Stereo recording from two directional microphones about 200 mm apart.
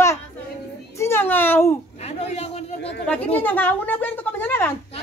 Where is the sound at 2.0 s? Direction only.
30° left (ahead or behind).